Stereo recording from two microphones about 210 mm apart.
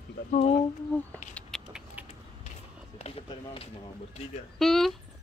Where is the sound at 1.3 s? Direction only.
Centre (ahead or behind).